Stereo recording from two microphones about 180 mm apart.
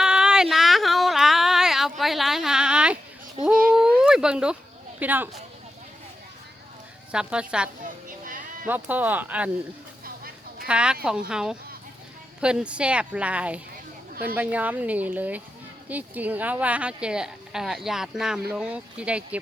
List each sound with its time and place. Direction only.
0.0 s a sound: 5° right (ahead or behind)
4.9 s speech: 10° right (ahead or behind)
7.1 s speech: 5° right (ahead or behind)
7.9 s a sound: 50° right (ahead or behind)
8.6 s a woman's voice: 10° right (ahead or behind)
10.7 s a woman's voice: 5° right (ahead or behind)